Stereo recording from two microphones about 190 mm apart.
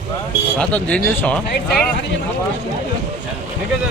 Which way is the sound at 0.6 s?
5° left (ahead or behind).